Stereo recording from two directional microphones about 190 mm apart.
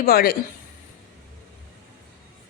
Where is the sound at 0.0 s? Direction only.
50° left (ahead or behind).